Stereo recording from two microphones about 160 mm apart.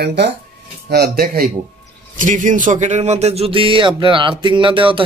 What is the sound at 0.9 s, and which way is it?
Speech, 75° right (ahead or behind).